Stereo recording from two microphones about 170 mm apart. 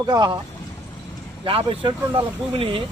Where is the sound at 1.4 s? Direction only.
30° right (ahead or behind).